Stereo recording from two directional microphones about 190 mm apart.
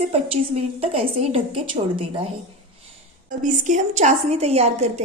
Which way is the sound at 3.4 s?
40° right (ahead or behind).